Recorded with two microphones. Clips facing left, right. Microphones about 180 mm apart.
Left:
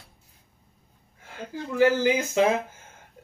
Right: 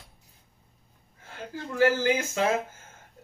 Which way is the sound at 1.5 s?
15° left (ahead or behind).